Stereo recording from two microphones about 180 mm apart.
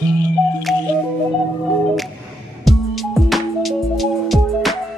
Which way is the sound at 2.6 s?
Centre (ahead or behind).